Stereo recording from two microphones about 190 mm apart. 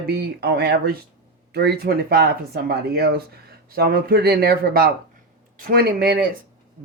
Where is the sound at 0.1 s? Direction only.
60° right (ahead or behind).